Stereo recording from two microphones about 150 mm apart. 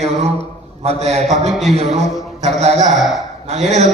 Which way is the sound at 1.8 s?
45° right (ahead or behind).